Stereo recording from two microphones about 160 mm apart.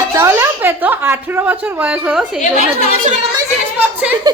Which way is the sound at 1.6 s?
10° right (ahead or behind).